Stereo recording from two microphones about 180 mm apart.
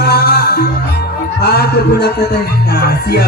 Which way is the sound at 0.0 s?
60° left (ahead or behind).